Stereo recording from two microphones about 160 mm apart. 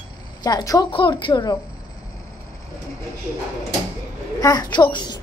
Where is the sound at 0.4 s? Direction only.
25° left (ahead or behind).